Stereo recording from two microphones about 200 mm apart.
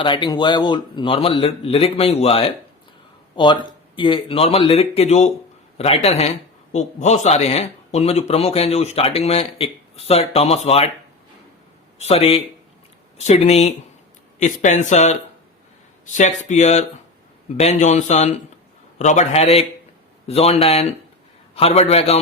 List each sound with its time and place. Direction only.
0.0 s speech: 25° left (ahead or behind)
11.9 s speech: 30° left (ahead or behind)